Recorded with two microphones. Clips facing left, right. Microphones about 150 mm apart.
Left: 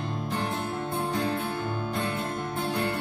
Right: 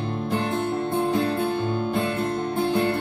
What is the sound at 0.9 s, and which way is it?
Music, 25° right (ahead or behind).